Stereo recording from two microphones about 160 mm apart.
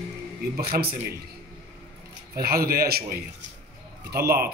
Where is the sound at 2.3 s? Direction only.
70° right (ahead or behind).